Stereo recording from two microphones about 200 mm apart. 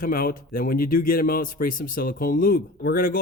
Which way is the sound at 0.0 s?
45° left (ahead or behind).